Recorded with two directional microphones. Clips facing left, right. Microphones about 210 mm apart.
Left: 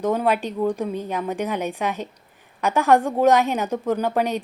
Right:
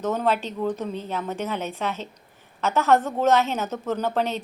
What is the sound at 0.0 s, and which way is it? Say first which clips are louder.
A woman's voice: left 3 dB; 10° left (ahead or behind).